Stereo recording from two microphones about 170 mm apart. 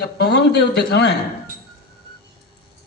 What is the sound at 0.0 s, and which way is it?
A man's voice, 75° left (ahead or behind).